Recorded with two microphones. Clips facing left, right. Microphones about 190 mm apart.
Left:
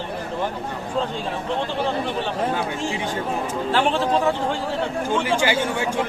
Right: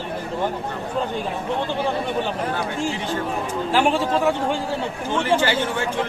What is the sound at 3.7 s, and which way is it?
Speech, 10° right (ahead or behind).